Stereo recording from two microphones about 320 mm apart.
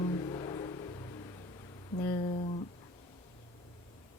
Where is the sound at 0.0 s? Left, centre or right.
Centre.